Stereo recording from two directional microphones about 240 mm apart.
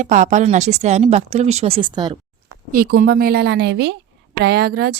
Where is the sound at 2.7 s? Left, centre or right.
Right.